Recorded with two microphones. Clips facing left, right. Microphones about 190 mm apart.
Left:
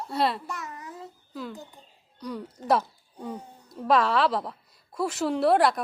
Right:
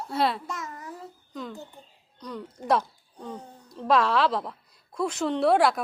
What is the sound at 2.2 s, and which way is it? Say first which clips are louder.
A woman's voice: left 2 dB; 10° left (ahead or behind).